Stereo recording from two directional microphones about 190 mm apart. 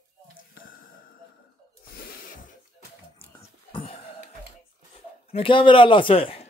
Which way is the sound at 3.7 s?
30° left (ahead or behind).